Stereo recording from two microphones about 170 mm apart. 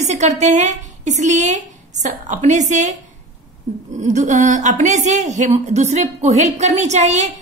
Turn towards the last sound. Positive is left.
turn(degrees=-40)  # may be behind; listen again after turning